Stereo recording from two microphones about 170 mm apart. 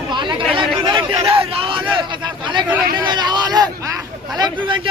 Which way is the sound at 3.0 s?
25° right (ahead or behind).